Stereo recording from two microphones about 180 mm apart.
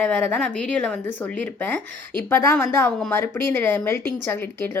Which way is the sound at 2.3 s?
15° left (ahead or behind).